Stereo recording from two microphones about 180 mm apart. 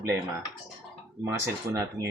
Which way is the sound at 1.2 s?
15° right (ahead or behind).